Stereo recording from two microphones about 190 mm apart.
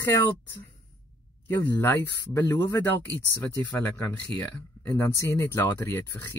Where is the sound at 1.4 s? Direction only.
10° left (ahead or behind).